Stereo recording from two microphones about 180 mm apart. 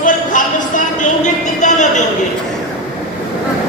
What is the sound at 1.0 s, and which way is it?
Music, 40° left (ahead or behind).